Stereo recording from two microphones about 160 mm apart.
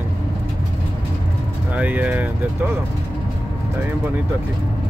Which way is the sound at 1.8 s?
10° right (ahead or behind).